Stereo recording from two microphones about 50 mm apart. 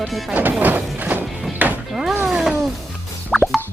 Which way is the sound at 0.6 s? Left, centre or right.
Right.